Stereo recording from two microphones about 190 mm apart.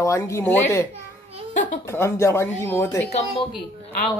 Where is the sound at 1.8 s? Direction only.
15° left (ahead or behind).